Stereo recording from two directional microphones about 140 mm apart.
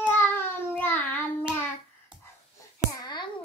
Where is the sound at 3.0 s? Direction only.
30° left (ahead or behind).